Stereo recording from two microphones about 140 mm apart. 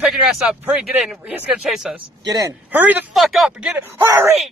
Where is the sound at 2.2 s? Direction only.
25° right (ahead or behind).